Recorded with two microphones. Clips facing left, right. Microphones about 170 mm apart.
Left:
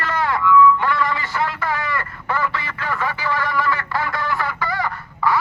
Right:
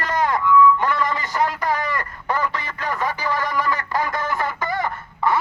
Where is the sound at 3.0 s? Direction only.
40° right (ahead or behind).